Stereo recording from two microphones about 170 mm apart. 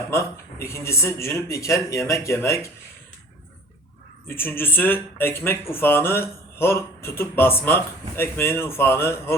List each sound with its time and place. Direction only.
0.1 s speech: 15° left (ahead or behind)
4.3 s speech: 10° left (ahead or behind)